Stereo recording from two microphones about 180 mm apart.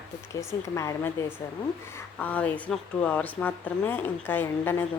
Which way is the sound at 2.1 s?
10° left (ahead or behind).